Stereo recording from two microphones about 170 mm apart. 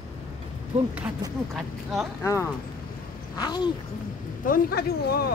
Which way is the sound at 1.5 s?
Centre (ahead or behind).